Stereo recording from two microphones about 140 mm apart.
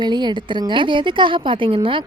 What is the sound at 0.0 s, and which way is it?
A woman's voice, 30° right (ahead or behind).